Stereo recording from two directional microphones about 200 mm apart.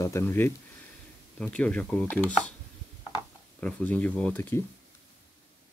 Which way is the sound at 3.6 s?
5° left (ahead or behind).